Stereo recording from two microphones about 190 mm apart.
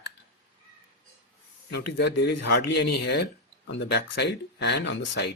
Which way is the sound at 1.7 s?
60° left (ahead or behind).